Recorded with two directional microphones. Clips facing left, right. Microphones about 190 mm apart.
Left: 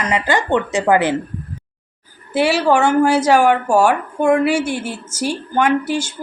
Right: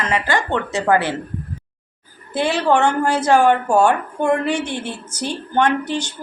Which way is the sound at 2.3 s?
10° left (ahead or behind).